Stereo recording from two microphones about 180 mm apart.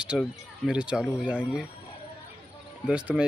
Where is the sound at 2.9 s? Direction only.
5° right (ahead or behind).